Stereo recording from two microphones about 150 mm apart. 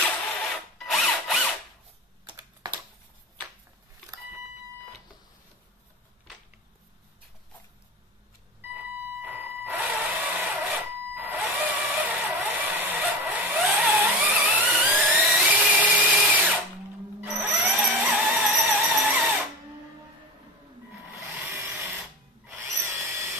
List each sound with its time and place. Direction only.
0.7 s drill: centre (ahead or behind)
8.7 s a sound: 10° right (ahead or behind)
11.1 s vehicle: 10° right (ahead or behind)
13.7 s a sound: 10° right (ahead or behind)
17.2 s drill: 10° right (ahead or behind)
21.1 s tools: 10° right (ahead or behind)
21.5 s drill: 15° right (ahead or behind)
22.5 s tools: 20° right (ahead or behind)